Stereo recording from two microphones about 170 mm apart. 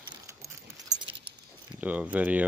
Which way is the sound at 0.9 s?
30° right (ahead or behind).